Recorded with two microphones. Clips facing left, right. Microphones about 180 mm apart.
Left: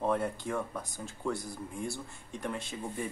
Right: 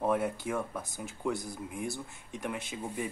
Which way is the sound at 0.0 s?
5° right (ahead or behind).